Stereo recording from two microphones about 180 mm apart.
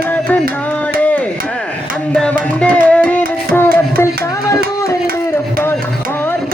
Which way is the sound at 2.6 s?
5° left (ahead or behind).